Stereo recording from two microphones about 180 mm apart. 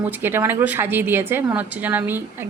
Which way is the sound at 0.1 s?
10° right (ahead or behind).